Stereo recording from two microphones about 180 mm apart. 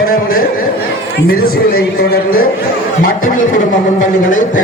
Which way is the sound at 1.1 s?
55° left (ahead or behind).